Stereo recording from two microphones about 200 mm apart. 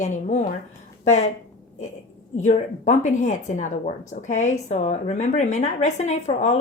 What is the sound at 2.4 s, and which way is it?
A woman's voice, 35° left (ahead or behind).